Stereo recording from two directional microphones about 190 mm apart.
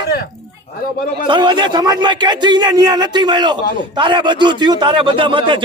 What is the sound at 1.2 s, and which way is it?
A man's voice, 25° right (ahead or behind).